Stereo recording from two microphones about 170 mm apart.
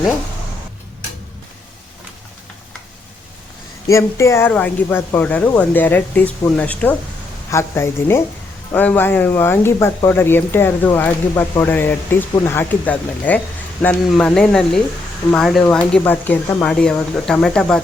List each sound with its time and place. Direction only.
3.8 s speech: 15° left (ahead or behind)